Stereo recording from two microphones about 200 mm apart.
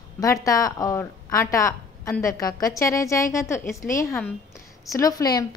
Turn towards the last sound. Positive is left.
turn(degrees=20)  # may be behind; listen again after turning